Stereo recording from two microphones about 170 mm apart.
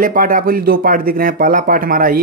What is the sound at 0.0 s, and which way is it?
Speech, 55° right (ahead or behind).